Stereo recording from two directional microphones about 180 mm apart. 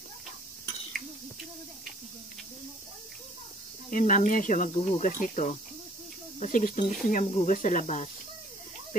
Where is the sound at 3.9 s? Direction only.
45° left (ahead or behind).